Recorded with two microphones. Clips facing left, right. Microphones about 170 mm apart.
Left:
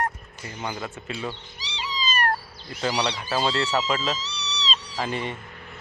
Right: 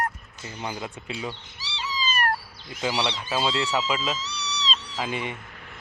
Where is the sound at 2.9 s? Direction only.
15° left (ahead or behind).